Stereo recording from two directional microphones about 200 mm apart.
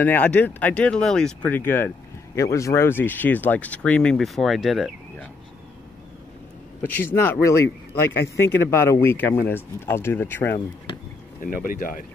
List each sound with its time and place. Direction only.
0.0 s speech: 10° left (ahead or behind)
7.1 s speech: 15° left (ahead or behind)
7.6 s speech: 60° left (ahead or behind)
8.5 s speech: 15° left (ahead or behind)
11.4 s speech: 45° left (ahead or behind)